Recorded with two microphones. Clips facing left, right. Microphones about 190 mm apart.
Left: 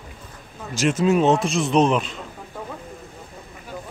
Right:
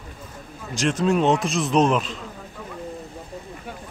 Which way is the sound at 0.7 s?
5° left (ahead or behind).